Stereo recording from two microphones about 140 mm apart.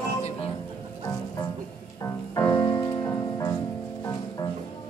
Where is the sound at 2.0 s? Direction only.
25° left (ahead or behind).